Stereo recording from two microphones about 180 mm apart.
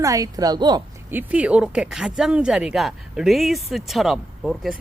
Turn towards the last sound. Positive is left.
turn(degrees=0)  # may be behind; listen again after turning